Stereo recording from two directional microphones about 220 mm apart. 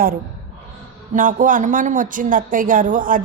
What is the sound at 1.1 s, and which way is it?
A woman's voice, 35° right (ahead or behind).